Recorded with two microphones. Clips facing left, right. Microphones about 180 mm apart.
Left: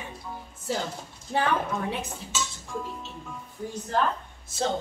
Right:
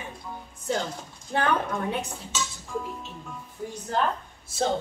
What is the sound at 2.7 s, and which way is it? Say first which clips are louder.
Speech: right 3 dB; 10° right (ahead or behind).